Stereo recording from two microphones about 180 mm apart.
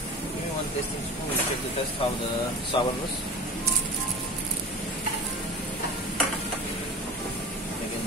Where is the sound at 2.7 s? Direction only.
25° left (ahead or behind).